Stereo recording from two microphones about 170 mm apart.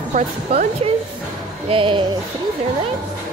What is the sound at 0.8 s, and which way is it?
A woman's voice, 35° right (ahead or behind).